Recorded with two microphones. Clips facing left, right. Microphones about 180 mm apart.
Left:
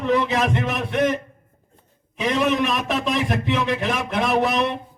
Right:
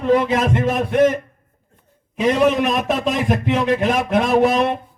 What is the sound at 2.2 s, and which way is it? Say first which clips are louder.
A man's voice: right 5 dB; 50° right (ahead or behind).